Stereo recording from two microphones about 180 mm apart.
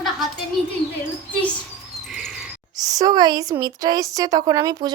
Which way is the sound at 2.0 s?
Centre (ahead or behind).